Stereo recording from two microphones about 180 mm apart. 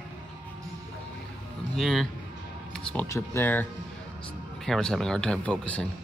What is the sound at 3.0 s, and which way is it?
A man's voice, 15° left (ahead or behind).